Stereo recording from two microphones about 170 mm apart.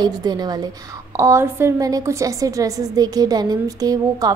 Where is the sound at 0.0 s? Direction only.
25° right (ahead or behind).